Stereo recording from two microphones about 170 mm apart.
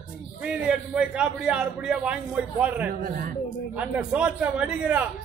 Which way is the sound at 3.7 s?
5° right (ahead or behind).